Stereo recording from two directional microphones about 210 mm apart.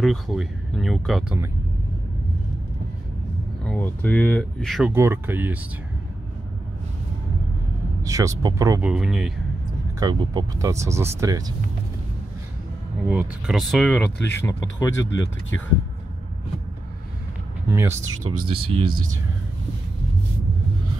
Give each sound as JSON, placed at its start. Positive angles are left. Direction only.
{"t": 0.0, "sound": "speech", "side_deg": 0}
{"t": 3.6, "sound": "speech", "side_deg": 5}
{"t": 4.9, "sound": "speech", "side_deg": -10}
{"t": 8.0, "sound": "speech", "side_deg": -15}
{"t": 8.8, "sound": "speech", "side_deg": 0}
{"t": 9.9, "sound": "speech", "side_deg": -20}
{"t": 13.1, "sound": "speech", "side_deg": -5}
{"t": 14.1, "sound": "speech", "side_deg": 55}
{"t": 14.4, "sound": "speech", "side_deg": 15}
{"t": 17.6, "sound": "speech", "side_deg": -10}
{"t": 18.0, "sound": "speech", "side_deg": -90}
{"t": 18.4, "sound": "speech", "side_deg": -25}